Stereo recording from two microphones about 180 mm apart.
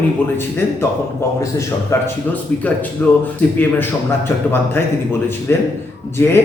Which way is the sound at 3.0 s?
10° left (ahead or behind).